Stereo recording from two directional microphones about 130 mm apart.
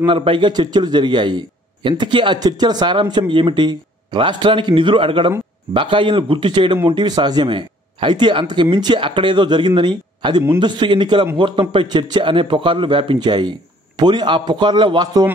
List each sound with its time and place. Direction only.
0.0 s a man's voice: 40° right (ahead or behind)